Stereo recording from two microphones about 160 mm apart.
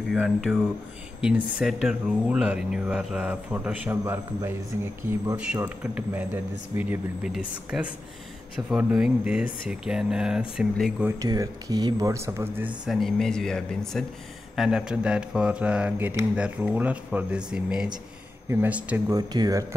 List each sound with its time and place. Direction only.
0.1 s speech: 5° right (ahead or behind)
11.1 s speech: 20° right (ahead or behind)
12.8 s speech: centre (ahead or behind)
19.1 s speech: 25° right (ahead or behind)